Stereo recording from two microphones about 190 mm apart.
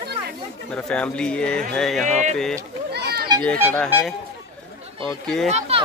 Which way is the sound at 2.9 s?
55° right (ahead or behind).